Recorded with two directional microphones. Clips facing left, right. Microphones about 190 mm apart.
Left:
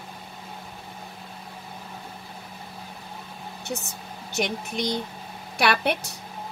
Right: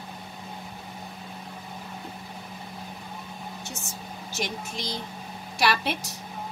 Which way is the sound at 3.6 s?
60° left (ahead or behind).